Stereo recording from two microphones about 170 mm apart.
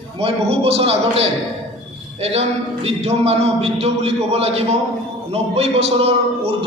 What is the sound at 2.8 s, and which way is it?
A man's voice, 40° right (ahead or behind).